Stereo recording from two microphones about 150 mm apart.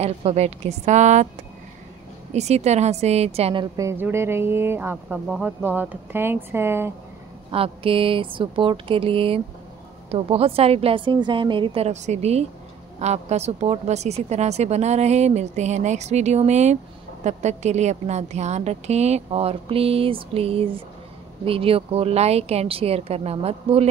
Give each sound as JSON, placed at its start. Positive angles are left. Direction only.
{"t": 0.0, "sound": "speech", "side_deg": -45}
{"t": 2.3, "sound": "speech", "side_deg": -45}
{"t": 3.7, "sound": "a woman's voice", "side_deg": -15}
{"t": 7.5, "sound": "speech", "side_deg": -40}